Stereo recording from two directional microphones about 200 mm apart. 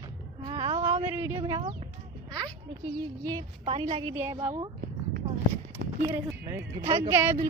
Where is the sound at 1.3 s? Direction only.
25° right (ahead or behind).